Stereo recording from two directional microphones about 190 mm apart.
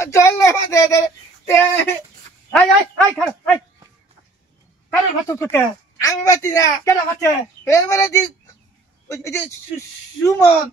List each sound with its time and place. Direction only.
0.0 s a woman's voice: 15° left (ahead or behind)
5.3 s a woman's voice: 10° left (ahead or behind)